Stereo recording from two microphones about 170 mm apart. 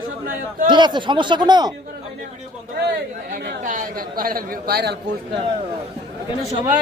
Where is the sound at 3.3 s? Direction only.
70° right (ahead or behind).